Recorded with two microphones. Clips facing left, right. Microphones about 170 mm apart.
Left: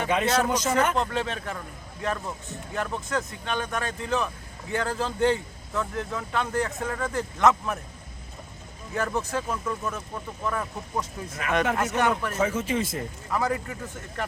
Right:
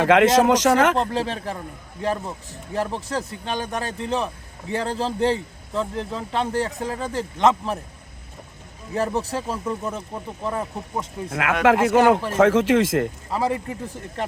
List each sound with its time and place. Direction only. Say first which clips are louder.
0.0 s speech: right 9 dB; 90° right
0.9 s a man's voice: right 4 dB; 30° right (ahead or behind)
9.0 s a man's voice: right 4 dB; 35° right (ahead or behind)
11.3 s speech: right 8 dB; 90° right
13.3 s speech: right 2 dB; 30° right (ahead or behind)